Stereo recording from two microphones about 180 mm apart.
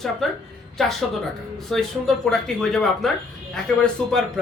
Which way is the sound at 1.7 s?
5° left (ahead or behind).